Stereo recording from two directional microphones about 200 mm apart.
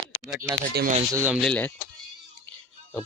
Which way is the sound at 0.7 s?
50° right (ahead or behind).